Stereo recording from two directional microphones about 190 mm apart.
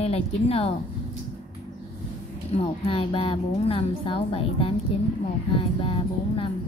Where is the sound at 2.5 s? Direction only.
30° left (ahead or behind).